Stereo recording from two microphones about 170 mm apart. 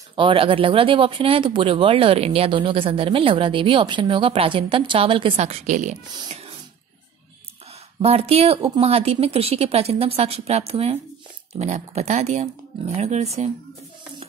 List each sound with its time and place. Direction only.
0.1 s speech: 30° right (ahead or behind); by 5.9 s 45° right (ahead or behind)
8.0 s speech: 35° right (ahead or behind)